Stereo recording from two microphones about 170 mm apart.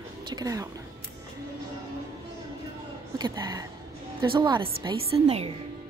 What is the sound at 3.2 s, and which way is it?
A woman's voice, 25° right (ahead or behind).